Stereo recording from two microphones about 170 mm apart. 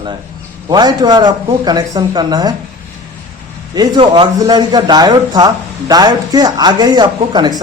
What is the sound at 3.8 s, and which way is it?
Speech, 25° right (ahead or behind).